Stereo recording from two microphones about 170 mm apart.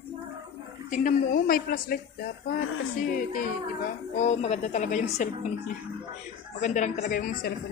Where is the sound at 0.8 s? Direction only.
55° left (ahead or behind).